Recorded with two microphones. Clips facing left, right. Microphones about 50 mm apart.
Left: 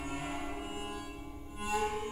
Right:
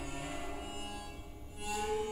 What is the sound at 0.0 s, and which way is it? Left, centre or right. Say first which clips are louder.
Music: left 3 dB; left.